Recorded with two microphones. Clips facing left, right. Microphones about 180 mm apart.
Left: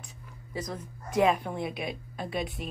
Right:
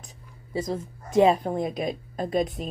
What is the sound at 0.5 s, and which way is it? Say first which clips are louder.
A woman's voice: right 7 dB; 25° right (ahead or behind).